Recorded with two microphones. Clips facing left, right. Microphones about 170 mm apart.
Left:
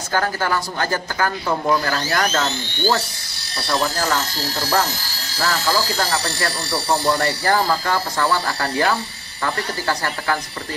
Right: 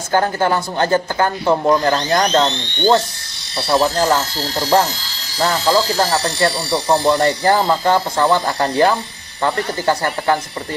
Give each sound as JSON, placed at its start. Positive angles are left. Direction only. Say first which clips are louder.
{"t": 0.1, "sound": "speech", "louder": "right 5 dB", "side_deg": -25}
{"t": 2.5, "sound": "speech", "louder": "right 4 dB", "side_deg": 5}
{"t": 3.6, "sound": "speech", "louder": "right 6 dB", "side_deg": -30}
{"t": 5.4, "sound": "speech", "louder": "right 5 dB", "side_deg": -20}